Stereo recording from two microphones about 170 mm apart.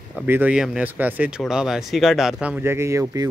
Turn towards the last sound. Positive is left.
turn(degrees=-20)  # may be behind; listen again after turning